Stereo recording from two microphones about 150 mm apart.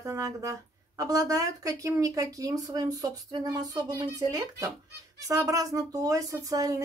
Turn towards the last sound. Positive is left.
turn(degrees=-25)  # may be behind; listen again after turning